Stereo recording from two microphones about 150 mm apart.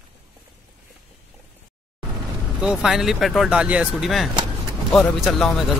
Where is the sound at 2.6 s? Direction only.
5° right (ahead or behind).